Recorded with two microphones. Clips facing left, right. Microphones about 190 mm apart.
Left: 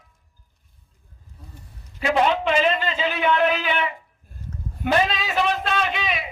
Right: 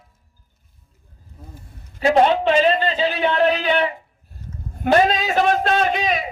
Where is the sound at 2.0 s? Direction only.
35° right (ahead or behind).